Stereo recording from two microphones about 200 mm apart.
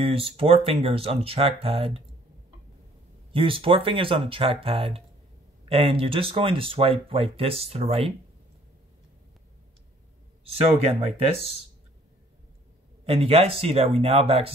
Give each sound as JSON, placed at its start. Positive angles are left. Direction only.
{"t": 0.0, "sound": "speech", "side_deg": -30}
{"t": 3.3, "sound": "speech", "side_deg": -25}
{"t": 10.5, "sound": "speech", "side_deg": -30}
{"t": 13.0, "sound": "speech", "side_deg": -30}